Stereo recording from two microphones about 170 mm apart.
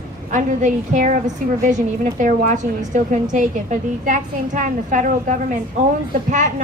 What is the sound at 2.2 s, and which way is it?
A woman's voice, 45° right (ahead or behind).